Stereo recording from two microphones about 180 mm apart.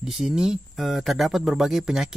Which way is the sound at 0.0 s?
5° right (ahead or behind).